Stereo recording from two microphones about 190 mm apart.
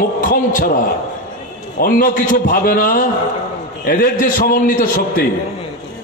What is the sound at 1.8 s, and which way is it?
A man's voice, 50° left (ahead or behind).